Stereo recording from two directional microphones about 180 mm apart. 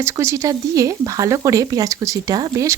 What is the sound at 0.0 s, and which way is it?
Speech, 15° right (ahead or behind).